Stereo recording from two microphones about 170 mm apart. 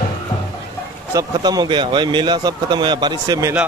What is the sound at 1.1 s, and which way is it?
Speech, 25° right (ahead or behind).